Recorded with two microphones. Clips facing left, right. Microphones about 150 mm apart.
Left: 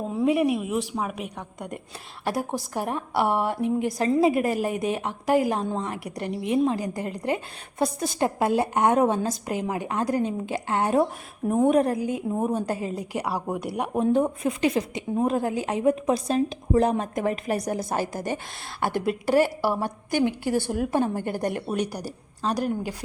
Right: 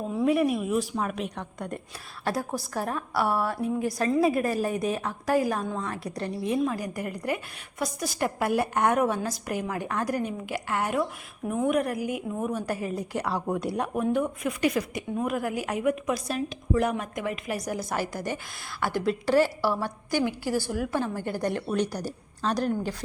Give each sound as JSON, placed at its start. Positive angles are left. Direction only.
{"t": 0.3, "sound": "a woman's voice", "side_deg": 20}
{"t": 12.6, "sound": "a woman's voice", "side_deg": 20}
{"t": 13.9, "sound": "a woman's voice", "side_deg": 30}
{"t": 17.8, "sound": "a woman's voice", "side_deg": 20}